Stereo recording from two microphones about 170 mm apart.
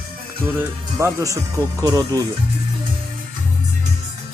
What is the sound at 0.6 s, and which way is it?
Speech, 15° right (ahead or behind).